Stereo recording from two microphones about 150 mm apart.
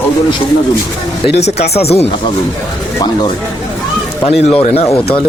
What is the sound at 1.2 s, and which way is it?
Speech, 45° left (ahead or behind).